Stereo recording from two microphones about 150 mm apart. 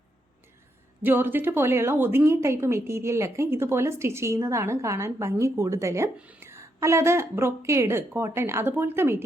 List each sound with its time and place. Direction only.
1.0 s a woman's voice: 15° right (ahead or behind)